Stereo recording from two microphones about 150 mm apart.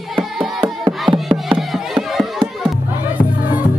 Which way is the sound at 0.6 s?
35° right (ahead or behind).